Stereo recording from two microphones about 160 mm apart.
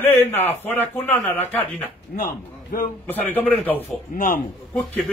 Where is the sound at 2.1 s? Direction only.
60° left (ahead or behind).